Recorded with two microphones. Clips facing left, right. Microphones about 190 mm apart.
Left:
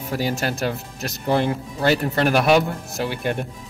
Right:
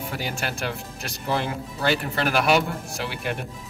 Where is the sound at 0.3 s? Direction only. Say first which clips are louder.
Left 6 dB; 40° left (ahead or behind).